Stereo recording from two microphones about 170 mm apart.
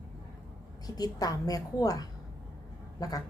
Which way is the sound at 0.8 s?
20° left (ahead or behind).